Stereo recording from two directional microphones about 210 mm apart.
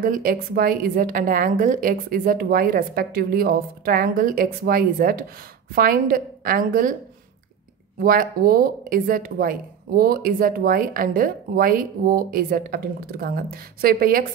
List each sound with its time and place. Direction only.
0.0 s a woman's voice: 40° right (ahead or behind)
8.0 s speech: 45° right (ahead or behind)